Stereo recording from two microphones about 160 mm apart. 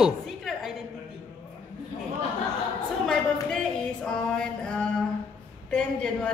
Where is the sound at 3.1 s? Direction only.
5° left (ahead or behind).